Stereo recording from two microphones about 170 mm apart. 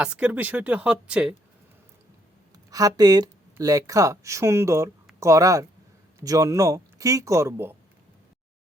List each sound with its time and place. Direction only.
0.0 s a woman's voice: 5° right (ahead or behind)
2.6 s speech: 20° right (ahead or behind)